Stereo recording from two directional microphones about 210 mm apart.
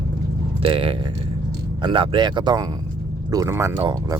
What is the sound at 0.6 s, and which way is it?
Speech, 25° right (ahead or behind).